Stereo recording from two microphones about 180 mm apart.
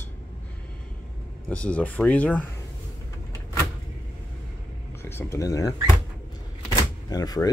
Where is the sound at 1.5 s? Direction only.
5° left (ahead or behind).